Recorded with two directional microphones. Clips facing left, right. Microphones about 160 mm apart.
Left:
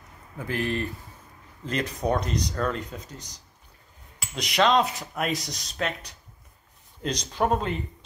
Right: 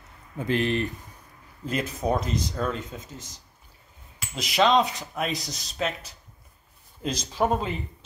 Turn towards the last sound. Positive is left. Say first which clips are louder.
# even
turn(degrees=0)  # may be behind; listen again after turning